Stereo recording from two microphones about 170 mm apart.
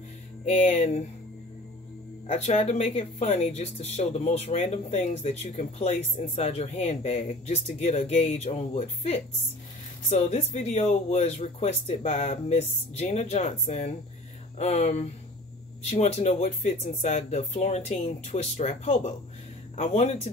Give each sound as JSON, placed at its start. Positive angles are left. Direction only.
{"t": 0.5, "sound": "speech", "side_deg": 45}
{"t": 2.2, "sound": "speech", "side_deg": 40}